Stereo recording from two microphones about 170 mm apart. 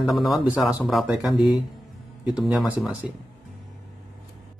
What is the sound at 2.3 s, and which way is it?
Speech, 5° right (ahead or behind).